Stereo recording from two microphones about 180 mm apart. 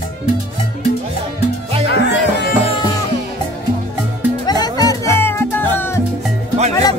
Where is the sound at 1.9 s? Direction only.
70° left (ahead or behind).